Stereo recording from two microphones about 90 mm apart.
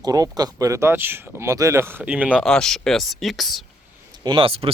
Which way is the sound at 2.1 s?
15° right (ahead or behind).